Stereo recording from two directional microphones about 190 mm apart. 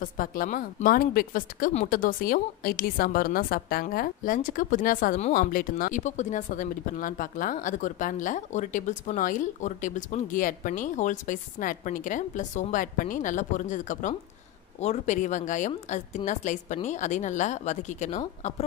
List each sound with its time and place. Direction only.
0.0 s a woman's voice: 45° left (ahead or behind)